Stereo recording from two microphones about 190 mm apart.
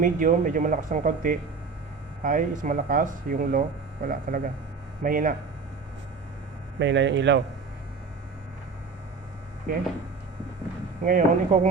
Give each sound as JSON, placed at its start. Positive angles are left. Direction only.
{"t": 0.0, "sound": "speech", "side_deg": -45}
{"t": 6.7, "sound": "speech", "side_deg": -70}
{"t": 9.7, "sound": "speech", "side_deg": -45}
{"t": 11.0, "sound": "speech", "side_deg": -45}